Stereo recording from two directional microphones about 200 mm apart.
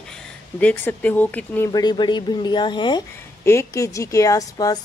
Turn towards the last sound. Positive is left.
turn(degrees=20)  # may be behind; listen again after turning